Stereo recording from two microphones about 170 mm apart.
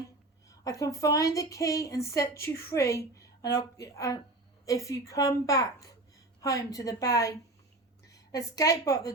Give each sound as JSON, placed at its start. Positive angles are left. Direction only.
{"t": 0.4, "sound": "a woman's voice", "side_deg": 20}